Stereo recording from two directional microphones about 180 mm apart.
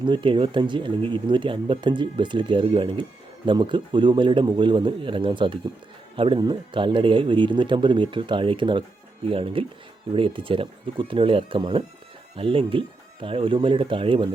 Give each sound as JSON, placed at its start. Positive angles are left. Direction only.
{"t": 0.0, "sound": "speech", "side_deg": -25}